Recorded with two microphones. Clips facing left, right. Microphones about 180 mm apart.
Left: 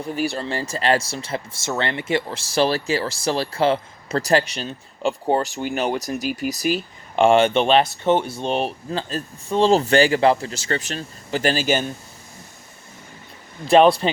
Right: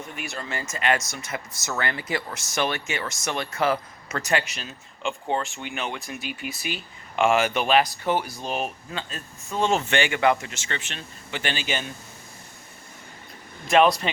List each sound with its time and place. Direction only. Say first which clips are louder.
0.0 s speech: left 10 dB; 35° left (ahead or behind)
13.7 s speech: left 5 dB; 30° left (ahead or behind)